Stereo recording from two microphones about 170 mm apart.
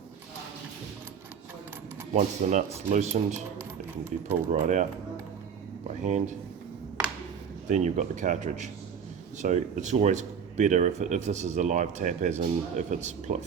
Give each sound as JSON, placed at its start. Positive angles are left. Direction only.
{"t": 2.1, "sound": "speech", "side_deg": -45}
{"t": 4.5, "sound": "speech", "side_deg": -45}
{"t": 6.0, "sound": "speech", "side_deg": -45}
{"t": 7.7, "sound": "speech", "side_deg": -45}